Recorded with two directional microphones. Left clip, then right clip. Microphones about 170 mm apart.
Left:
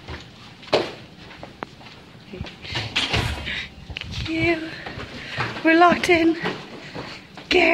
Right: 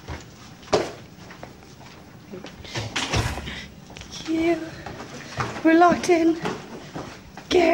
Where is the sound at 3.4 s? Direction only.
20° right (ahead or behind).